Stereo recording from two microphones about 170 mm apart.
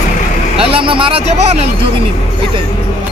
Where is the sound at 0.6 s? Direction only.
30° right (ahead or behind).